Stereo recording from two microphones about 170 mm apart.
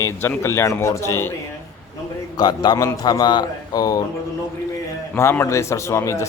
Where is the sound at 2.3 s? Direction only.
25° left (ahead or behind).